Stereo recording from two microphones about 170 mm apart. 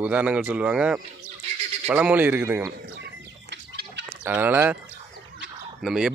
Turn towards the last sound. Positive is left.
turn(degrees=-5)  # may be behind; listen again after turning